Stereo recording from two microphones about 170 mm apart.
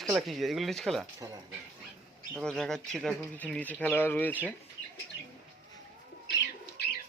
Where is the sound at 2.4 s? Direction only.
5° left (ahead or behind).